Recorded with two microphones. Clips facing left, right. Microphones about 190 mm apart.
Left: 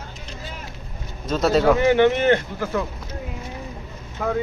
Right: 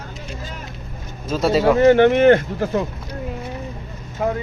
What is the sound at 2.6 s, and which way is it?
Speech, 25° right (ahead or behind).